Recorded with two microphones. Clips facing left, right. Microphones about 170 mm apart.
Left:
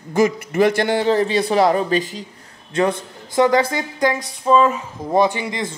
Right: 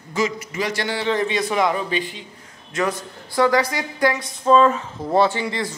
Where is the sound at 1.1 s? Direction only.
35° left (ahead or behind).